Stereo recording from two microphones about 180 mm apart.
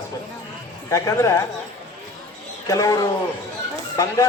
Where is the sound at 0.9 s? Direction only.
15° left (ahead or behind).